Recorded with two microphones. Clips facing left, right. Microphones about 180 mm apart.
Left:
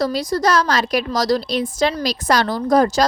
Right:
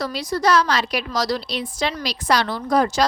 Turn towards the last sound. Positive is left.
turn(degrees=40)  # may be behind; listen again after turning